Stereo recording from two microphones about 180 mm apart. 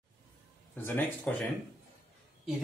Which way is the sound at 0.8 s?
10° left (ahead or behind).